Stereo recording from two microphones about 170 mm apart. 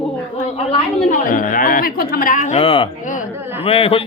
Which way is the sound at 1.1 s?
50° left (ahead or behind).